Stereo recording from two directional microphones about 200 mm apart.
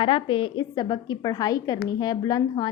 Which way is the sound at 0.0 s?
25° left (ahead or behind).